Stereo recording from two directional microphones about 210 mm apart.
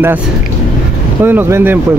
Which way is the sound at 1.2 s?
10° right (ahead or behind).